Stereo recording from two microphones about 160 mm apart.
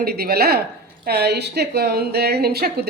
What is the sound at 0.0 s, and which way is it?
Speech, 75° right (ahead or behind).